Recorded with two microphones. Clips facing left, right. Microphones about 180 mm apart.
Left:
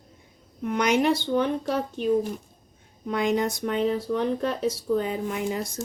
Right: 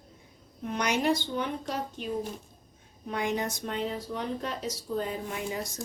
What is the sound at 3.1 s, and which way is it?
Speech, 65° left (ahead or behind).